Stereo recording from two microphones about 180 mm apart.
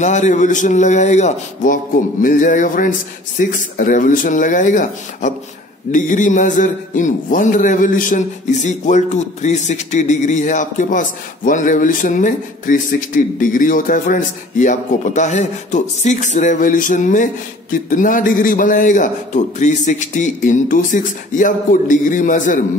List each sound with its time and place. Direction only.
0.0 s speech: 40° left (ahead or behind)